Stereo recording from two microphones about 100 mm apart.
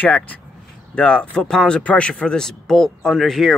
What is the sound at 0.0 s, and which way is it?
Speech, 15° left (ahead or behind).